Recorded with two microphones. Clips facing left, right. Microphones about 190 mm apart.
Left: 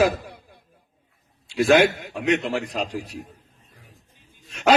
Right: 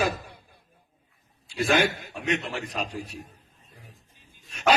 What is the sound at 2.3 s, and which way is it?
Speech, 90° left.